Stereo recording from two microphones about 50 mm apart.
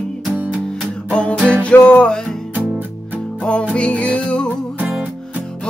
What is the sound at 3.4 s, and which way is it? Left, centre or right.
Music, left.